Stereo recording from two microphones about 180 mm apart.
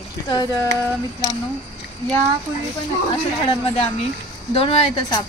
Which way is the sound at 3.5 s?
30° left (ahead or behind).